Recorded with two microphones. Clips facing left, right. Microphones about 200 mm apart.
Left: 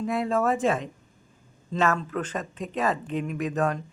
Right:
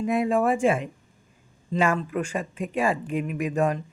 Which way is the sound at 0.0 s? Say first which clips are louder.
Right 3 dB; 15° right (ahead or behind).